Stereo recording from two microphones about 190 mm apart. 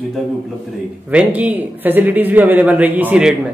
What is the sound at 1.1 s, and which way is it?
A man's voice, 5° right (ahead or behind).